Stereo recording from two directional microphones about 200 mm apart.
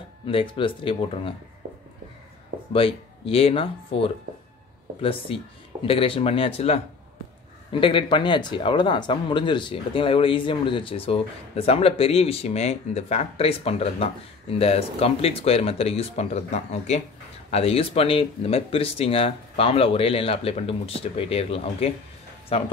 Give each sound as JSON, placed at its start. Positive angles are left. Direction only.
{"t": 0.3, "sound": "speech", "side_deg": 25}
{"t": 2.7, "sound": "speech", "side_deg": 30}
{"t": 7.8, "sound": "speech", "side_deg": 25}